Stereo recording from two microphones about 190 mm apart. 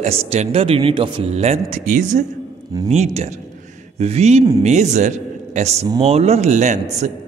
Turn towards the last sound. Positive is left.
turn(degrees=-35)  # may be behind; listen again after turning